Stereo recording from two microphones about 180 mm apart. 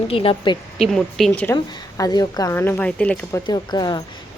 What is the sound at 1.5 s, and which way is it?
Speech, 20° left (ahead or behind).